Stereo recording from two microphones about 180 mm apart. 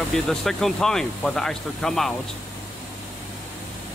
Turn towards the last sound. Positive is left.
turn(degrees=5)  # may be behind; listen again after turning